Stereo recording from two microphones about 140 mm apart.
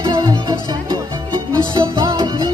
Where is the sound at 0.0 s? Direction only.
30° right (ahead or behind).